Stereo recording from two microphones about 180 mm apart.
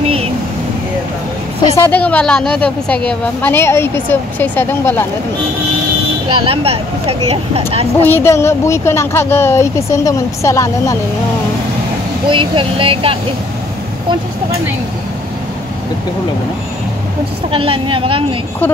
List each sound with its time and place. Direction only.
1.8 s a woman's voice: 10° left (ahead or behind)
6.2 s speech: 30° right (ahead or behind)
8.1 s a woman's voice: 15° left (ahead or behind)
12.3 s speech: 30° right (ahead or behind)
17.5 s speech: 30° right (ahead or behind)